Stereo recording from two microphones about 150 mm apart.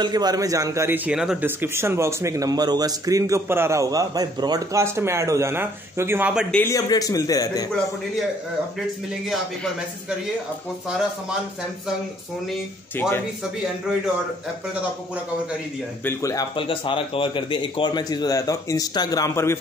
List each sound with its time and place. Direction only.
0.0 s a man's voice: 25° right (ahead or behind)
6.5 s a man's voice: 15° left (ahead or behind)
16.0 s a man's voice: 20° left (ahead or behind)
16.5 s a man's voice: 35° left (ahead or behind)